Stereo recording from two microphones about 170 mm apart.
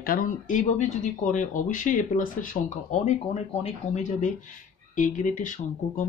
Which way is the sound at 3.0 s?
40° left (ahead or behind).